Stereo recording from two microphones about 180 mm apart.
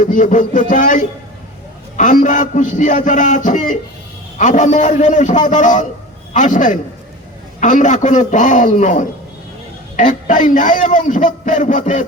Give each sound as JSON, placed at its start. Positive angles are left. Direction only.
{"t": 0.0, "sound": "a man's voice", "side_deg": 45}